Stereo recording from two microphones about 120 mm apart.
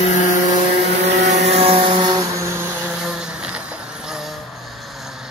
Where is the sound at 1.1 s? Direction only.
75° right (ahead or behind); by 2.6 s 25° right (ahead or behind).